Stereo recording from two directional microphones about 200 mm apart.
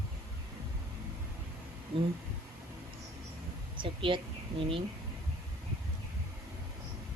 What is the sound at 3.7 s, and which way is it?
Speech, 25° right (ahead or behind).